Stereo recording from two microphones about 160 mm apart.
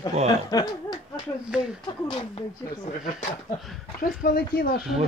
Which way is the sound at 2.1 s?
35° left (ahead or behind).